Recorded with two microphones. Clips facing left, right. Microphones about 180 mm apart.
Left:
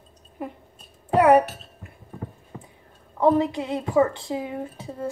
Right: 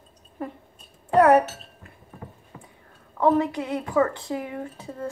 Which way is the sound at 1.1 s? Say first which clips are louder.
Even; 10° left (ahead or behind).